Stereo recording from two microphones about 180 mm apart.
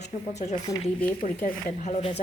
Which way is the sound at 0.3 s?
40° left (ahead or behind).